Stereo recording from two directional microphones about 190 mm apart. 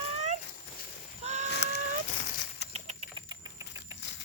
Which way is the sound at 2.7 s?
35° right (ahead or behind).